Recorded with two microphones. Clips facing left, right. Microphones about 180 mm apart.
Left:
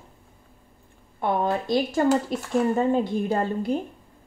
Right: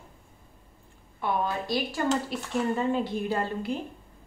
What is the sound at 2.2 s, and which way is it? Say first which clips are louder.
Speech: left 5 dB; 45° left (ahead or behind).